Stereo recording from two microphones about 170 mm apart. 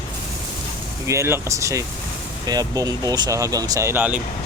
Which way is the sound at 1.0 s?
15° right (ahead or behind).